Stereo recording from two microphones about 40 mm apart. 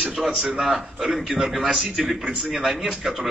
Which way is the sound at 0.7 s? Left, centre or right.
Centre.